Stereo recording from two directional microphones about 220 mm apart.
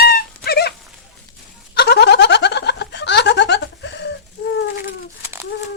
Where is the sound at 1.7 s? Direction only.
50° left (ahead or behind).